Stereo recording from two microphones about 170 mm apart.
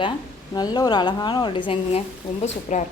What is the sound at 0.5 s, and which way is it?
Speech, 25° left (ahead or behind).